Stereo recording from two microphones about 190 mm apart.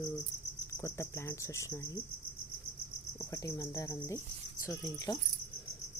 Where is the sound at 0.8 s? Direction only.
15° left (ahead or behind).